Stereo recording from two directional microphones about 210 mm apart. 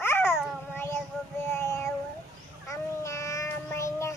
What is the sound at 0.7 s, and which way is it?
Child singing, 10° left (ahead or behind).